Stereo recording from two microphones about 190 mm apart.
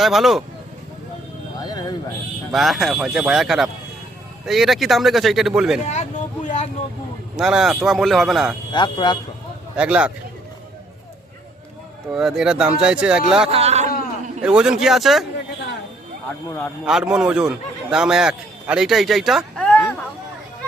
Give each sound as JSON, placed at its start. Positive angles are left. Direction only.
{"t": 0.0, "sound": "speech", "side_deg": 0}
{"t": 1.6, "sound": "a sound", "side_deg": 20}
{"t": 2.5, "sound": "speech", "side_deg": 0}
{"t": 5.8, "sound": "vehicle", "side_deg": 40}
{"t": 7.3, "sound": "speech", "side_deg": -5}
{"t": 8.7, "sound": "speech", "side_deg": 25}
{"t": 9.7, "sound": "speech", "side_deg": -5}
{"t": 12.1, "sound": "speech", "side_deg": -5}
{"t": 13.5, "sound": "a man's voice", "side_deg": -35}
{"t": 14.4, "sound": "speech", "side_deg": -5}
{"t": 16.8, "sound": "a man's voice", "side_deg": -5}